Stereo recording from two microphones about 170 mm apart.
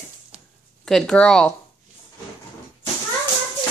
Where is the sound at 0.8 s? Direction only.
5° left (ahead or behind).